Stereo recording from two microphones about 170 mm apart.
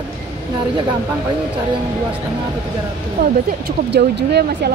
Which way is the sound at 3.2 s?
70° right (ahead or behind).